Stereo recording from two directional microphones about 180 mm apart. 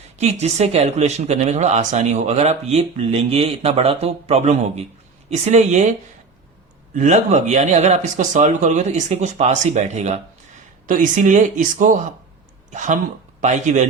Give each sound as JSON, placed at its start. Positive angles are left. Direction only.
{"t": 0.2, "sound": "speech", "side_deg": -40}
{"t": 6.9, "sound": "speech", "side_deg": -40}